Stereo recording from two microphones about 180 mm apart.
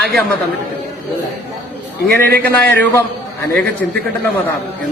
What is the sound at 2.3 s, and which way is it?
Speech, 55° right (ahead or behind).